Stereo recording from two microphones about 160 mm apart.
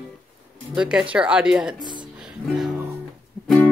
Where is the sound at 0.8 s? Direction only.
5° right (ahead or behind).